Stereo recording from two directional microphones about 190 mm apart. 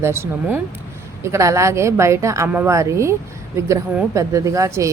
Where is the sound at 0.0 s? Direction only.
15° right (ahead or behind).